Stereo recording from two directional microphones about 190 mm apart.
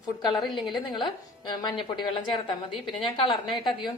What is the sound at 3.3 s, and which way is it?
Speech, centre (ahead or behind).